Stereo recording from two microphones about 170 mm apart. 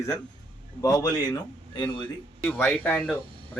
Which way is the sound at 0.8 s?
20° left (ahead or behind).